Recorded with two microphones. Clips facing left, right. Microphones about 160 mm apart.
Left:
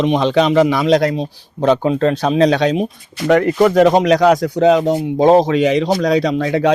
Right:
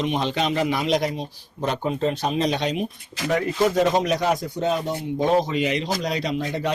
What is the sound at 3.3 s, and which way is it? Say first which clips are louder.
Speech: left 9 dB; 80° left.